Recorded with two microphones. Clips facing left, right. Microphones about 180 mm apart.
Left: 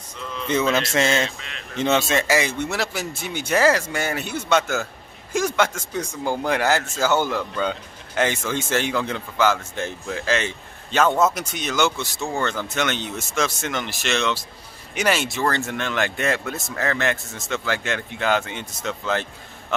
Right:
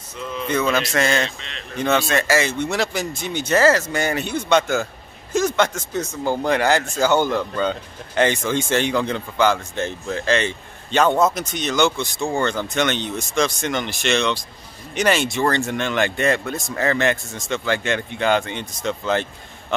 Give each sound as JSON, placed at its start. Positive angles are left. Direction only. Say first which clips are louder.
{"t": 0.7, "sound": "speech", "louder": "even", "side_deg": 25}
{"t": 1.1, "sound": "speech", "louder": "right 1 dB", "side_deg": 5}
{"t": 1.8, "sound": "speech", "louder": "right 1 dB", "side_deg": 20}